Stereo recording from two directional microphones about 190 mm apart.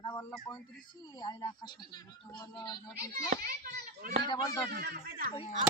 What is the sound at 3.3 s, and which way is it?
Speech, 50° right (ahead or behind).